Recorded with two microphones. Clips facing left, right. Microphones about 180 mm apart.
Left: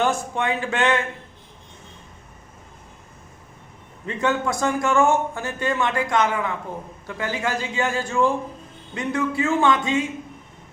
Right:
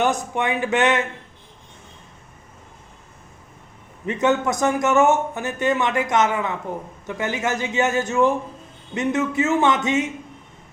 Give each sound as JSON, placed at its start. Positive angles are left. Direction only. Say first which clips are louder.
{"t": 0.0, "sound": "a man's voice", "louder": "right 1 dB", "side_deg": -20}
{"t": 4.0, "sound": "a man's voice", "louder": "right 3 dB", "side_deg": -20}